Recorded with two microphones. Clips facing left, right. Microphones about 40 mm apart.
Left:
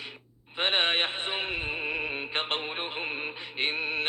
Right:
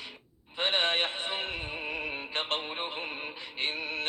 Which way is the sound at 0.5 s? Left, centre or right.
Left.